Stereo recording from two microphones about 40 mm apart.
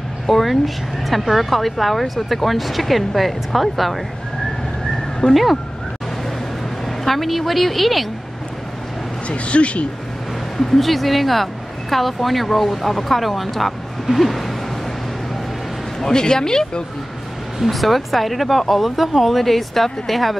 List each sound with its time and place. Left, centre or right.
0.3 s speech: centre
5.3 s speech: centre
7.1 s speech: centre
9.3 s speech: left
10.6 s speech: centre
16.0 s speech: centre
17.6 s speech: centre